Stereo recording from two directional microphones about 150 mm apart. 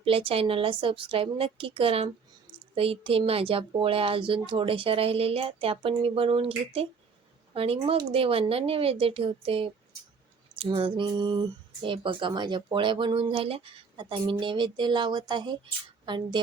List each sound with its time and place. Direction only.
0.0 s speech: 35° right (ahead or behind)
7.5 s speech: 40° right (ahead or behind)